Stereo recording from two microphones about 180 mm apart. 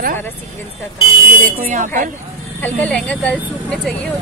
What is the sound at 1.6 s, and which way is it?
Speech, 50° right (ahead or behind).